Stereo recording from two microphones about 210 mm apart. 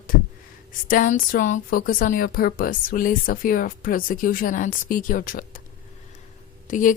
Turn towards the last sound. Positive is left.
turn(degrees=40)  # may be behind; listen again after turning